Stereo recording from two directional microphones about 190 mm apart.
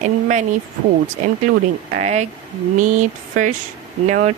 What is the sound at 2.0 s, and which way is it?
Speech, 35° right (ahead or behind).